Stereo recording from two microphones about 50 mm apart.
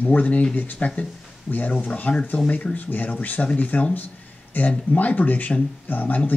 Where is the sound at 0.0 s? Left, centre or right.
Left.